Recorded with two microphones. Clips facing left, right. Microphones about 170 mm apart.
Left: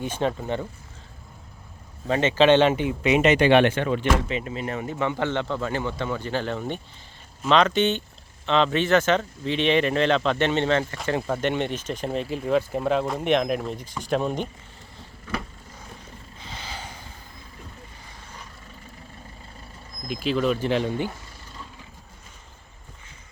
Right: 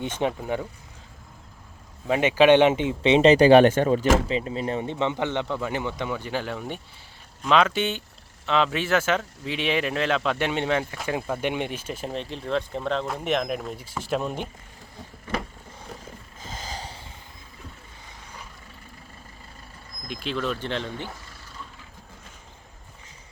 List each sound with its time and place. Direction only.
0.0 s speech: 20° right (ahead or behind)
0.3 s speech: 10° right (ahead or behind)
2.0 s speech: 10° right (ahead or behind)
16.4 s a sound: 40° right (ahead or behind)
20.1 s speech: 5° left (ahead or behind)